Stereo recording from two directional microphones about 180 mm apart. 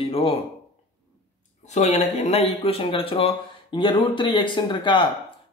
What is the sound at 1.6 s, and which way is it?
Speech, 40° left (ahead or behind).